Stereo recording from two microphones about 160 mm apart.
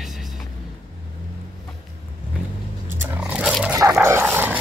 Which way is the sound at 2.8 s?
10° right (ahead or behind).